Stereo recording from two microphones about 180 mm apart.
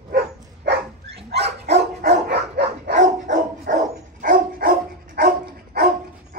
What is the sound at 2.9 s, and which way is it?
Dog, 45° right (ahead or behind).